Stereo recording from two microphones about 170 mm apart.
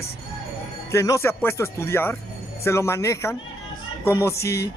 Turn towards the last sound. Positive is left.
turn(degrees=15)  # may be behind; listen again after turning